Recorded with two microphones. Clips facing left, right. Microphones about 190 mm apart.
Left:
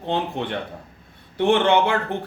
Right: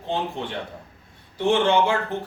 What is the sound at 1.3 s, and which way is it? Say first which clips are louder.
Speech: left 2 dB; 60° left (ahead or behind).